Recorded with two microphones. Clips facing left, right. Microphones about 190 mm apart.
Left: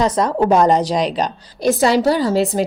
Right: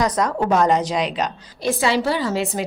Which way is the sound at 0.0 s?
30° left (ahead or behind).